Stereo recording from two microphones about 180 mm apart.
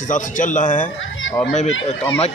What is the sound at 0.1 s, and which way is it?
Speech, 45° left (ahead or behind).